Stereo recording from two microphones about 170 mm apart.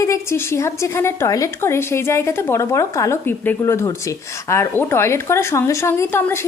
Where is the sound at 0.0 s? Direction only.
15° left (ahead or behind).